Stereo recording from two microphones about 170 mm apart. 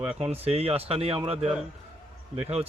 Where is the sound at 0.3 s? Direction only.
35° right (ahead or behind).